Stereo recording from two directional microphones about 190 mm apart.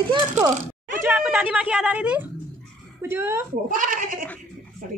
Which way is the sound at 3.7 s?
45° right (ahead or behind).